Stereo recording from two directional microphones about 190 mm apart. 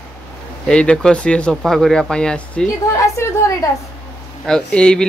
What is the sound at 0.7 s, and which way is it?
Speech, 5° left (ahead or behind).